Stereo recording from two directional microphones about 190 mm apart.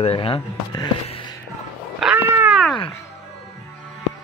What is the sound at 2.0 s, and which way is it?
Cat, 5° right (ahead or behind).